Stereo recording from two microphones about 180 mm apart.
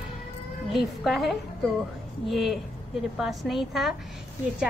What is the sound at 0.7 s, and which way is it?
A woman's voice, centre (ahead or behind).